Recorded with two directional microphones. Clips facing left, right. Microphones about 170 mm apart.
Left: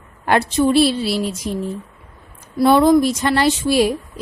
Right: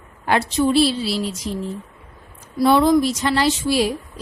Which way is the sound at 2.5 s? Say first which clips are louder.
Left 3 dB; 50° left (ahead or behind).